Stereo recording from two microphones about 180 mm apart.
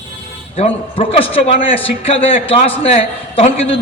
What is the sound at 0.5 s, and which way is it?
A man's voice, 30° left (ahead or behind).